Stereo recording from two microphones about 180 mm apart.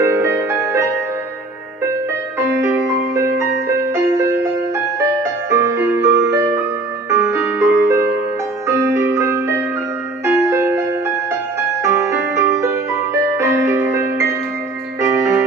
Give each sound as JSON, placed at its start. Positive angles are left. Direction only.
{"t": 0.0, "sound": "music", "side_deg": -15}
{"t": 2.3, "sound": "music", "side_deg": -15}
{"t": 11.8, "sound": "music", "side_deg": -15}